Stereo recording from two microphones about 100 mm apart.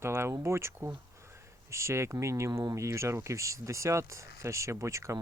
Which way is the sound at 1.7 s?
30° right (ahead or behind).